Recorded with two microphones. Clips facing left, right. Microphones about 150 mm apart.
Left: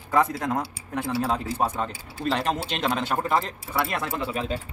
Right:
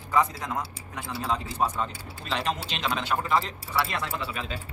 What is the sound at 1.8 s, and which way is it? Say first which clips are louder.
Speech: left 5 dB; 50° left (ahead or behind).